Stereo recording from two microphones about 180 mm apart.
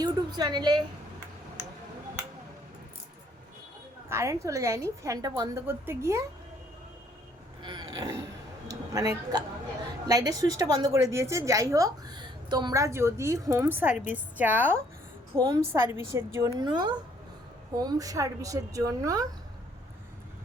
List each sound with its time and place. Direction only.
0.0 s a woman's voice: 20° right (ahead or behind)
4.1 s a woman's voice: 15° right (ahead or behind)
7.6 s a sound: 25° right (ahead or behind)
8.9 s a woman's voice: 20° right (ahead or behind)